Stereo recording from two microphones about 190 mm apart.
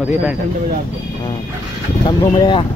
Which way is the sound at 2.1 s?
20° left (ahead or behind).